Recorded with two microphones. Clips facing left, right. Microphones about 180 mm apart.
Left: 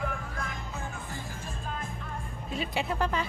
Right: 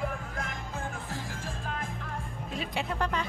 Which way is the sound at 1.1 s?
90° right.